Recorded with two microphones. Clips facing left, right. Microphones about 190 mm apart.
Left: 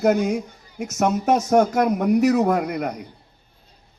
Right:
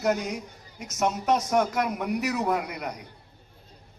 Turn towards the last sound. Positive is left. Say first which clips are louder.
# left 7 dB
turn(degrees=50)  # may be behind; listen again after turning